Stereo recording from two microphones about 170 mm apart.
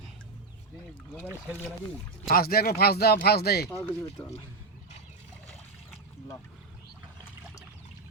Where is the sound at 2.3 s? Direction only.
65° left (ahead or behind).